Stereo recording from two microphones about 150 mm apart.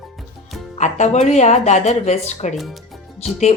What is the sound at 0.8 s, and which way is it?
A woman's voice, 50° left (ahead or behind).